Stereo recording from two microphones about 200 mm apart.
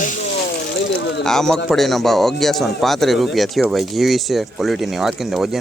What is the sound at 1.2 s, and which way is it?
Speech, centre (ahead or behind).